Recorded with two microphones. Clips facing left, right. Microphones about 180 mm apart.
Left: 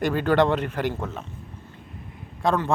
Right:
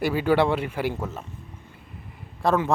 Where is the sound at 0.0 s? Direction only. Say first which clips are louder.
Left 1 dB; 10° right (ahead or behind).